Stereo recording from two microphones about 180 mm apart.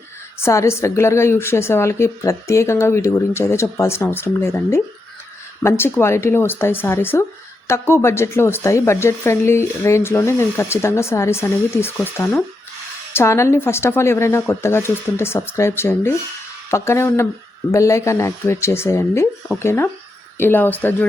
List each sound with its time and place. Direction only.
0.3 s a woman's voice: 15° left (ahead or behind)